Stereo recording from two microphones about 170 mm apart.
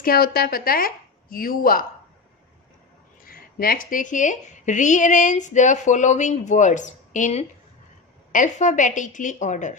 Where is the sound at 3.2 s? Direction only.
60° left (ahead or behind).